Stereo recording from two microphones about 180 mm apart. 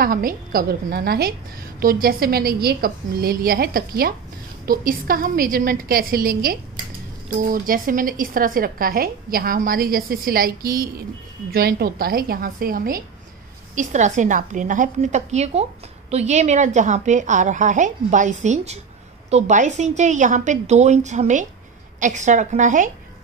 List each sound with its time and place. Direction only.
0.0 s a woman's voice: 50° right (ahead or behind)